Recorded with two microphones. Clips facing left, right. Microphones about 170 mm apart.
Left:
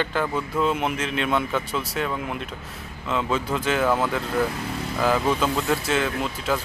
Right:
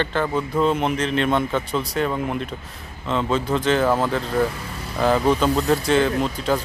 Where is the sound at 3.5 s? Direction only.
5° left (ahead or behind).